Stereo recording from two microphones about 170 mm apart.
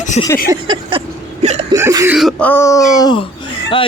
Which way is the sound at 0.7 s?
30° right (ahead or behind).